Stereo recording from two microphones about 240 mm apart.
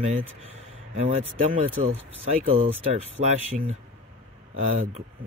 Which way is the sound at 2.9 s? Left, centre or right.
Right.